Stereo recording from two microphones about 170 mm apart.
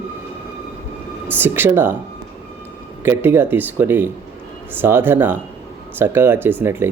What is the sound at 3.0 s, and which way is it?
Speech, 15° right (ahead or behind).